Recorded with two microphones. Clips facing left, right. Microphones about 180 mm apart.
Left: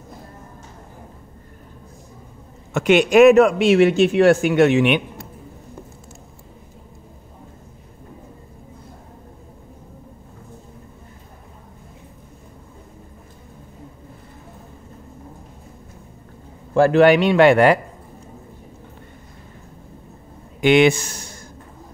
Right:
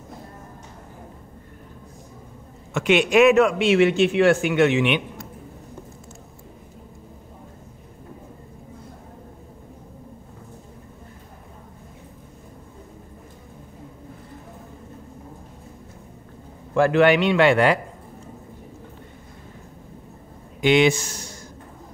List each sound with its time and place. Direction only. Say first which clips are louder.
2.7 s speech: left 4 dB; 40° left (ahead or behind)
16.7 s speech: left 4 dB; 35° left (ahead or behind)
20.6 s speech: left 3 dB; 55° left (ahead or behind)